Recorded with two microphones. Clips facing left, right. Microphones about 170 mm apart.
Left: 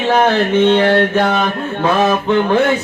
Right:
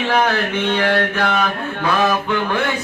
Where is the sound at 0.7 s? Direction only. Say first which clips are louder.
Left 6 dB; 25° left (ahead or behind).